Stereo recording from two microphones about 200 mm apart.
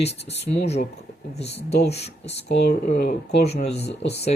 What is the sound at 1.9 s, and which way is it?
Speech, 30° left (ahead or behind).